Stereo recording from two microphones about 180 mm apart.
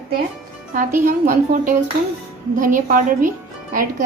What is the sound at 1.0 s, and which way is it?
A woman's voice, 45° right (ahead or behind).